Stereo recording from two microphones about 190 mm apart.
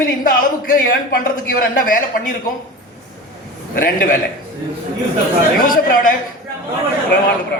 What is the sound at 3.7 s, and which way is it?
Speech, 45° left (ahead or behind).